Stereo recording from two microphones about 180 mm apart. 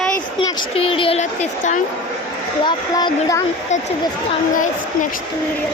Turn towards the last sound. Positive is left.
turn(degrees=45)  # may be behind; listen again after turning